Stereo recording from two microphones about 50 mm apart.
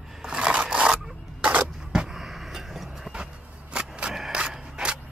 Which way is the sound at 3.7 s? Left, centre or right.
Centre.